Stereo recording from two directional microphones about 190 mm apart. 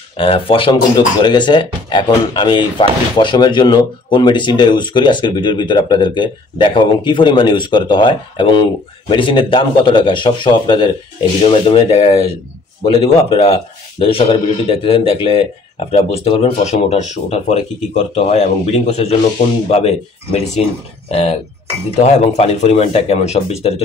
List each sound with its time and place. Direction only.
0.2 s a man's voice: 30° left (ahead or behind)